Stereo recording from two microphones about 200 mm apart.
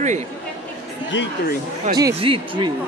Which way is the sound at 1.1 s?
60° left (ahead or behind).